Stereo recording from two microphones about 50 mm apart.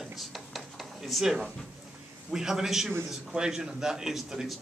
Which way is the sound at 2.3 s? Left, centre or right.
Centre.